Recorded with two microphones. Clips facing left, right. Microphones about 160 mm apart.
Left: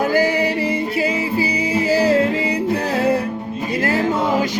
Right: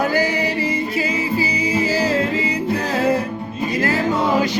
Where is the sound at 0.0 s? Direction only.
50° left (ahead or behind).